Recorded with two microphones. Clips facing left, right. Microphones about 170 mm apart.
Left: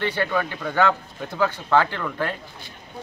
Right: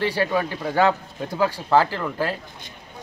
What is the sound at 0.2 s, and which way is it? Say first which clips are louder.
Speech: right 2 dB; 35° right (ahead or behind).